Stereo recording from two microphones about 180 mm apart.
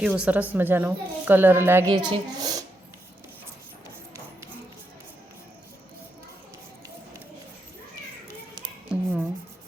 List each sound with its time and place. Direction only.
0.0 s speech: 5° right (ahead or behind)
1.9 s a child's voice: 25° right (ahead or behind)
8.9 s a sound: 5° right (ahead or behind)